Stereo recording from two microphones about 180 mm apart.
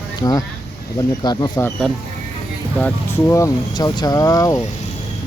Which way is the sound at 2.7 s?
10° left (ahead or behind).